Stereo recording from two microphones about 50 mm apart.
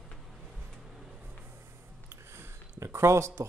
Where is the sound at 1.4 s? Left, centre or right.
Right.